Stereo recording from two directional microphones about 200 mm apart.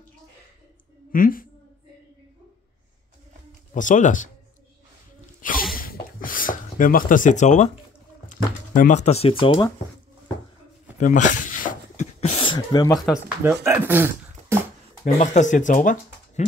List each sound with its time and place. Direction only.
1.1 s a woman's voice: 45° left (ahead or behind)
3.7 s speech: 40° left (ahead or behind)
5.4 s sneeze: 45° left (ahead or behind)
5.8 s a sound: 45° left (ahead or behind)
8.3 s speech: 40° left (ahead or behind)
11.0 s a sound: 40° left (ahead or behind); by 13.0 s 20° left (ahead or behind)
13.0 s speech: 5° right (ahead or behind)
14.5 s a sound: 10° right (ahead or behind)
15.1 s speech: 35° left (ahead or behind)